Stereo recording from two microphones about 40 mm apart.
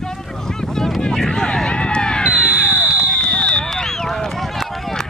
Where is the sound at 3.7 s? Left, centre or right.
Centre.